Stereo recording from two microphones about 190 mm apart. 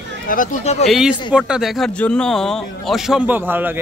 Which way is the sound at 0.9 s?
Centre (ahead or behind).